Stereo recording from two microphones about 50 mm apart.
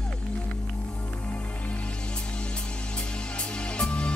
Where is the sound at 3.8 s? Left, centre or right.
Centre.